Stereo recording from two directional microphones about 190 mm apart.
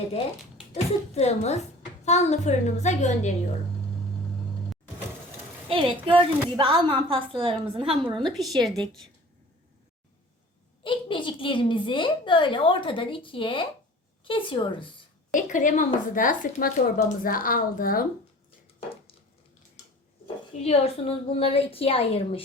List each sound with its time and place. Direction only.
0.7 s a woman's voice: 35° left (ahead or behind)
5.6 s a woman's voice: 30° right (ahead or behind)
8.3 s a woman's voice: centre (ahead or behind)
10.8 s a woman's voice: 25° left (ahead or behind)
15.4 s a woman's voice: 45° left (ahead or behind)
20.2 s a woman's voice: 30° left (ahead or behind)